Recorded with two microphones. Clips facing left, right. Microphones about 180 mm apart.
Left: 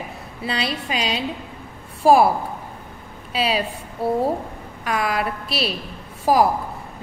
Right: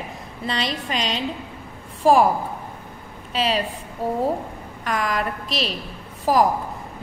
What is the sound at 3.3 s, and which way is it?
A woman's voice, 10° left (ahead or behind).